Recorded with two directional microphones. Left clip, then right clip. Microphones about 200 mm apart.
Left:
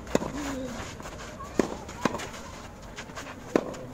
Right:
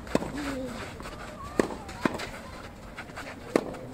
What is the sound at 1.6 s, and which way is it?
Run, 50° left (ahead or behind).